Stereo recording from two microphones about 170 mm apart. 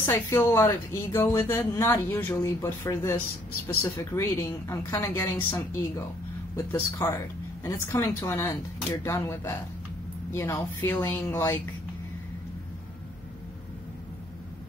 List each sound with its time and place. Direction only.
0.0 s speech: 15° left (ahead or behind)